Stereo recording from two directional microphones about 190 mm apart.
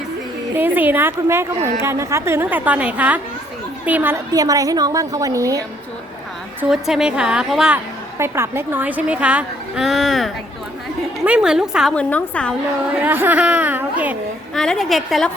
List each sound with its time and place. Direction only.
0.5 s a woman's voice: 10° right (ahead or behind)
6.6 s a woman's voice: 5° right (ahead or behind)
12.9 s a woman's voice: 10° right (ahead or behind)